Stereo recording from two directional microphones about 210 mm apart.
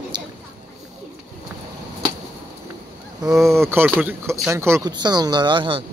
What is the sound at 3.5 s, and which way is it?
Speech, 10° right (ahead or behind).